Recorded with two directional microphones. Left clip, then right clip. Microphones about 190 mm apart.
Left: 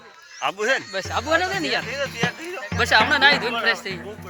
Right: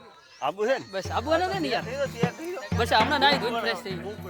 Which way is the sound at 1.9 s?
25° right (ahead or behind).